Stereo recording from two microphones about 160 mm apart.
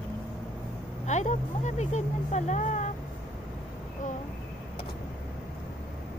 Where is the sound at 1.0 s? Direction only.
45° left (ahead or behind).